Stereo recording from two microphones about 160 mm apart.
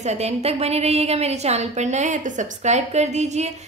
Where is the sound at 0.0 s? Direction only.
45° right (ahead or behind).